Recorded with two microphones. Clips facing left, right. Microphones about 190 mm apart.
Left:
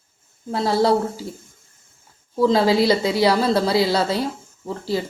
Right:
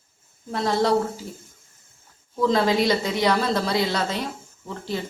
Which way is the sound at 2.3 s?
30° left (ahead or behind).